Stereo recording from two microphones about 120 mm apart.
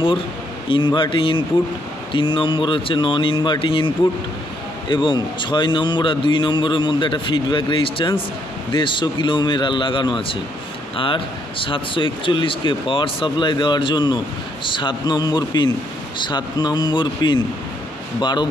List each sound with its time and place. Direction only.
0.7 s a man's voice: 45° left (ahead or behind)